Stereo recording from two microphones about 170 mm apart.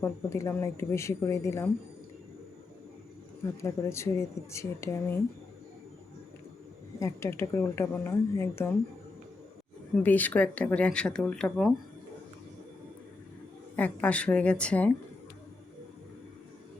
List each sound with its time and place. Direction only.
0.0 s speech: 15° left (ahead or behind)
3.4 s speech: 15° left (ahead or behind)
7.0 s speech: 15° left (ahead or behind)
10.0 s speech: 10° left (ahead or behind)
13.7 s speech: 10° left (ahead or behind)